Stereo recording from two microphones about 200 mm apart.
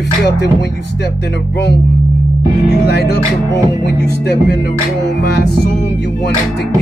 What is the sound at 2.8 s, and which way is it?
Speech, 55° left (ahead or behind).